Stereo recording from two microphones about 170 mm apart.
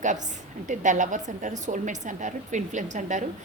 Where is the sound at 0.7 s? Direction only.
45° right (ahead or behind).